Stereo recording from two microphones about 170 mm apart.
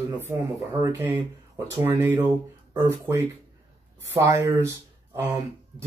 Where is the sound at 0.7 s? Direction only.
20° right (ahead or behind).